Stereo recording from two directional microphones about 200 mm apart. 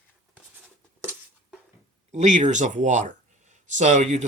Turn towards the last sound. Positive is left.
turn(degrees=-35)  # may be behind; listen again after turning